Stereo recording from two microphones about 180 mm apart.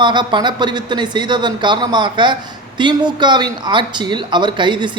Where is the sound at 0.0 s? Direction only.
25° right (ahead or behind).